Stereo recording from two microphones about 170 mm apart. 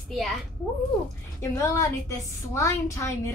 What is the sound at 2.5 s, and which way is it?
Speech, 15° left (ahead or behind).